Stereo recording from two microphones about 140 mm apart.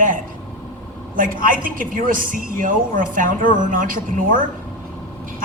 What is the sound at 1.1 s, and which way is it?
A woman's voice, 85° right.